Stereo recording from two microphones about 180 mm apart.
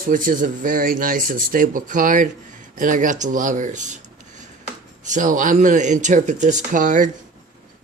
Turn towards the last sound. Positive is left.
turn(degrees=-45)  # may be behind; listen again after turning